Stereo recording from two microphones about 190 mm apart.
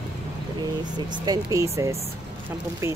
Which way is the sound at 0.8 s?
20° right (ahead or behind).